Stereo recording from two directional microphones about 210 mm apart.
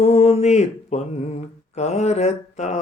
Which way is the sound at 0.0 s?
30° left (ahead or behind).